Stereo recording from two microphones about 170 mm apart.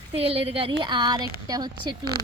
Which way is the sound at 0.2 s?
35° right (ahead or behind).